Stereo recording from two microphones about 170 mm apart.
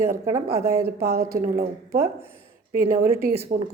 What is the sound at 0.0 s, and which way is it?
Speech, 15° right (ahead or behind).